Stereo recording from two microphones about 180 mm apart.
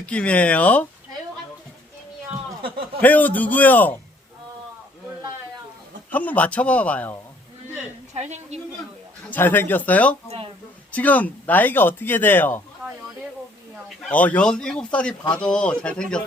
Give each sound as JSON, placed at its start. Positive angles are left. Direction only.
{"t": 0.0, "sound": "speech", "side_deg": 5}
{"t": 3.0, "sound": "speech", "side_deg": 10}
{"t": 6.1, "sound": "speech", "side_deg": 10}
{"t": 8.1, "sound": "a woman's voice", "side_deg": -40}
{"t": 9.3, "sound": "speech", "side_deg": 10}
{"t": 14.0, "sound": "speech", "side_deg": 10}